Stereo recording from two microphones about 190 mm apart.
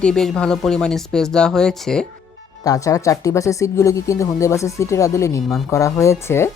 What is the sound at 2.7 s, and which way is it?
Speech, 15° left (ahead or behind).